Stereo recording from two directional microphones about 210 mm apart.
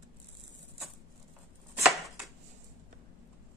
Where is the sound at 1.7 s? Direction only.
Centre (ahead or behind).